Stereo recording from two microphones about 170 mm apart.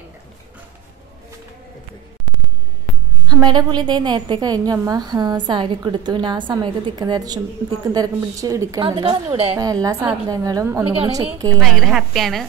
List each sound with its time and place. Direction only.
3.3 s a woman's voice: 25° right (ahead or behind)
11.6 s a woman's voice: centre (ahead or behind)